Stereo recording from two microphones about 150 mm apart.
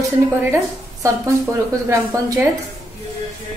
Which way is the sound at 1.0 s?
20° right (ahead or behind).